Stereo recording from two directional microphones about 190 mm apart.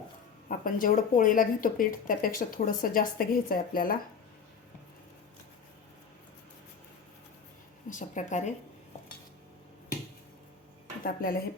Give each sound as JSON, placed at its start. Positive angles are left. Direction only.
{"t": 0.4, "sound": "speech", "side_deg": 45}
{"t": 7.9, "sound": "speech", "side_deg": 40}
{"t": 11.0, "sound": "speech", "side_deg": 50}